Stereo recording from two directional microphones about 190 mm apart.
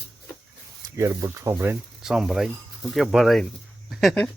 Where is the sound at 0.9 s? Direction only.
15° right (ahead or behind); by 4.2 s centre (ahead or behind).